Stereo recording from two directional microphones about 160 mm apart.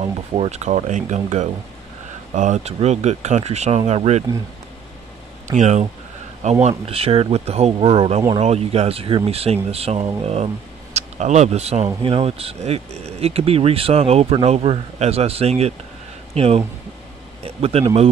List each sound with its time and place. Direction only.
0.0 s speech: 35° right (ahead or behind)
5.5 s speech: 45° right (ahead or behind)